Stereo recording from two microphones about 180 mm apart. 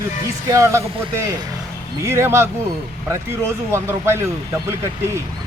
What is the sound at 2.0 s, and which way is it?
Speech, 15° right (ahead or behind).